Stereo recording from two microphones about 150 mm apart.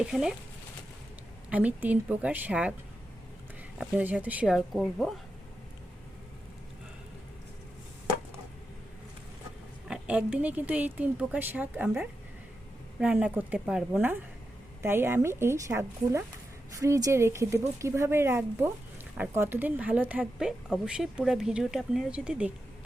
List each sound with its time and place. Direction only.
0.0 s speech: 5° right (ahead or behind)
1.5 s a woman's voice: 10° right (ahead or behind)
3.8 s speech: 10° right (ahead or behind)
9.9 s a woman's voice: 5° right (ahead or behind)